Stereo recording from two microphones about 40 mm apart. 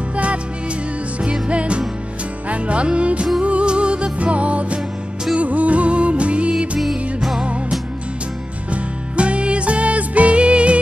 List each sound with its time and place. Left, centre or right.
0.1 s music: right
1.5 s music: right
6.8 s music: centre
9.1 s music: right